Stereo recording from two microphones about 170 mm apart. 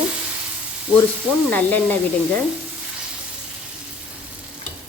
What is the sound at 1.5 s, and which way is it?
Speech, 10° left (ahead or behind).